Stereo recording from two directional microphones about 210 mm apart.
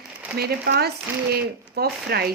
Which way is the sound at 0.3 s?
50° right (ahead or behind).